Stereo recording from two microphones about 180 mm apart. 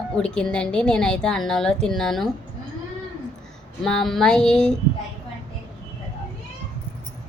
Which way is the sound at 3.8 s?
Centre (ahead or behind).